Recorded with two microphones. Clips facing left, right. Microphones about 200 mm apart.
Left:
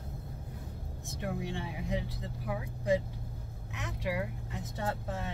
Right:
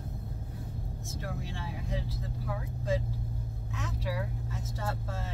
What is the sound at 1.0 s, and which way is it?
Speech, 20° left (ahead or behind).